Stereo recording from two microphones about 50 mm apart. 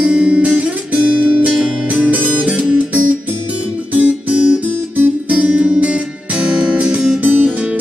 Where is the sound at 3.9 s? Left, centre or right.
Right.